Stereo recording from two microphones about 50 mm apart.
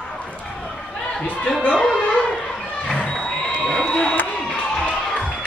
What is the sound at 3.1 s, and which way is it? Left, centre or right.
Crowd, centre.